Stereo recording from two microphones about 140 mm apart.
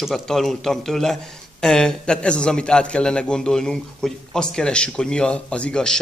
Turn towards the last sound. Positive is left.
turn(degrees=5)  # may be behind; listen again after turning